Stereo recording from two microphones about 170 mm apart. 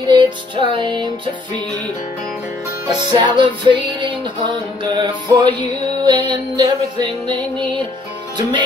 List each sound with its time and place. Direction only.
0.1 s music: 30° right (ahead or behind)
2.9 s music: 25° right (ahead or behind)